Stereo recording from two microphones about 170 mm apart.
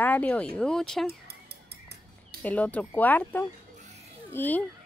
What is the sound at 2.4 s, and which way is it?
Speech, 10° left (ahead or behind).